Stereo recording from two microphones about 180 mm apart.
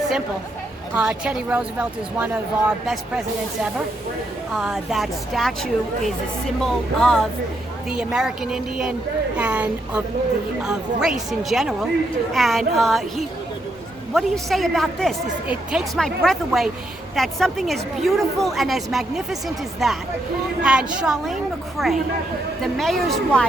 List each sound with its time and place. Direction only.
0.9 s a woman's voice: 5° right (ahead or behind)